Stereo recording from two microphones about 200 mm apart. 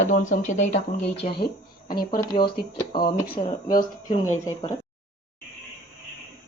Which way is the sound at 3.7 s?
45° left (ahead or behind).